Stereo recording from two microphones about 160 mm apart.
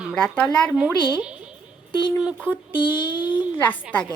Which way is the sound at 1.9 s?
30° left (ahead or behind).